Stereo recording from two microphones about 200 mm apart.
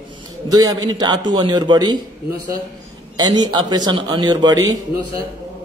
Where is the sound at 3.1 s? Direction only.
20° right (ahead or behind).